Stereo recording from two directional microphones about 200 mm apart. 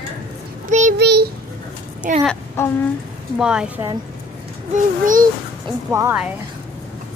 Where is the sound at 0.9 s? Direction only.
55° right (ahead or behind).